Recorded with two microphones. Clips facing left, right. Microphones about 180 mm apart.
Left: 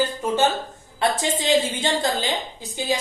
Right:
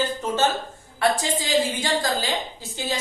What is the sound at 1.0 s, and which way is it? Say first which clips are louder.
A woman's voice: even; 25° left (ahead or behind).